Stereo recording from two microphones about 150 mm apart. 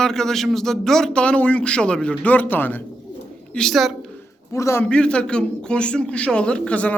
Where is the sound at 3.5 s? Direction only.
Centre (ahead or behind).